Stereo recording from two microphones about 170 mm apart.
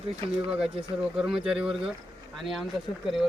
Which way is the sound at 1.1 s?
5° right (ahead or behind).